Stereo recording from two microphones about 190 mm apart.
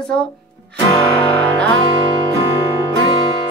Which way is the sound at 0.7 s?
30° left (ahead or behind).